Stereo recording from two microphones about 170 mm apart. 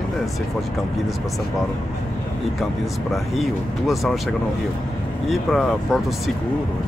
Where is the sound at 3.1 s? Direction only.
Centre (ahead or behind).